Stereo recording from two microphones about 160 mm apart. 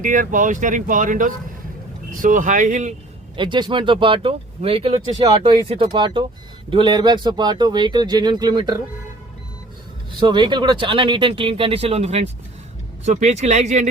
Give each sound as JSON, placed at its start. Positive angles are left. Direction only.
{"t": 0.0, "sound": "speech", "side_deg": -55}
{"t": 3.3, "sound": "speech", "side_deg": -30}
{"t": 10.2, "sound": "speech", "side_deg": -30}